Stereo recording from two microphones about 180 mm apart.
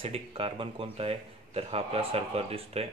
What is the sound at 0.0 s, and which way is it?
Speech, 30° right (ahead or behind).